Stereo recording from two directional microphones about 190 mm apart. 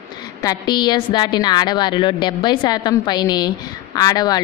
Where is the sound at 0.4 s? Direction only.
20° left (ahead or behind).